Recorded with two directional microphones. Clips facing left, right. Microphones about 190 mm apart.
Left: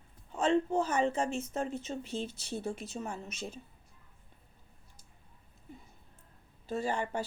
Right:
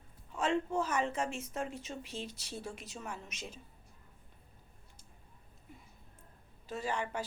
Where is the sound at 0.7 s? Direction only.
30° left (ahead or behind).